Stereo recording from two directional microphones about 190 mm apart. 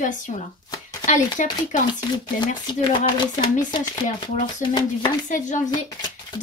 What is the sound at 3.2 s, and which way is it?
Speech, 25° left (ahead or behind).